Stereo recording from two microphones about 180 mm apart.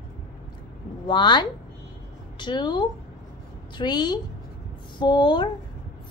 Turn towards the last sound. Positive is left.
turn(degrees=25)  # may be behind; listen again after turning